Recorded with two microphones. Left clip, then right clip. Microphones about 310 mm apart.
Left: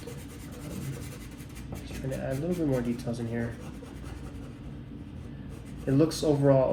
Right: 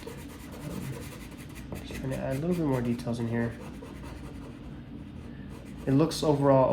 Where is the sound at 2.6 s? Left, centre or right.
Right.